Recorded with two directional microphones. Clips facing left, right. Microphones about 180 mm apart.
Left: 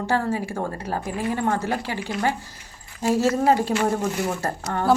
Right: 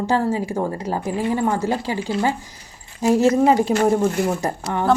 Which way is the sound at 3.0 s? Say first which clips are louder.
Right 4 dB; 40° right (ahead or behind).